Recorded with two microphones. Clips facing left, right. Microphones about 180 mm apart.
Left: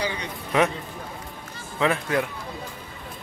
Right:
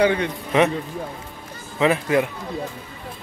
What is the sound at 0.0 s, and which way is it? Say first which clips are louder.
Speech: right 11 dB; 60° right (ahead or behind).